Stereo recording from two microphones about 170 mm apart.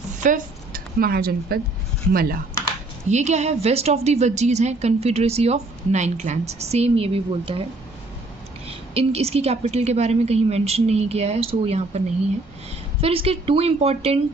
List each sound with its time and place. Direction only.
0.2 s speech: 50° right (ahead or behind)
3.1 s a woman's voice: 40° right (ahead or behind)
8.6 s a woman's voice: 35° right (ahead or behind)